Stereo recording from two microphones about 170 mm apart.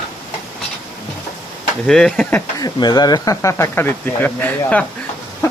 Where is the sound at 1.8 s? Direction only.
5° left (ahead or behind).